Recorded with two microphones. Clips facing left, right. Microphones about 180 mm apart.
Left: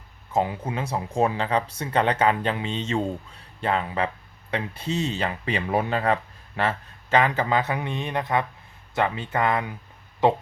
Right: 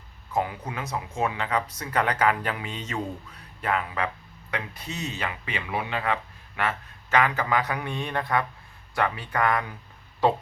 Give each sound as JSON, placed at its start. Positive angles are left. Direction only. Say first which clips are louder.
{"t": 0.3, "sound": "speech", "louder": "left 3 dB", "side_deg": 25}
{"t": 6.6, "sound": "speech", "louder": "left 3 dB", "side_deg": 30}